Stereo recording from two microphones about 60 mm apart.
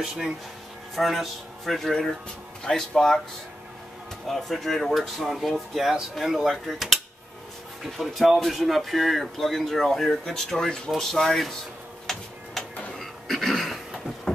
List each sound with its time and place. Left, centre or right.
0.9 s speech: centre
4.3 s speech: centre
12.1 s tick-tock: centre
12.6 s a sound: centre